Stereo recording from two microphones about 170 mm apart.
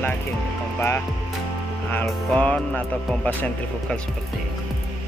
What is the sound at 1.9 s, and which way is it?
Speech, 10° left (ahead or behind).